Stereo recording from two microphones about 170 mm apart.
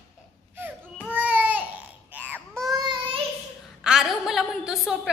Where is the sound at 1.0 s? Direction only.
5° right (ahead or behind).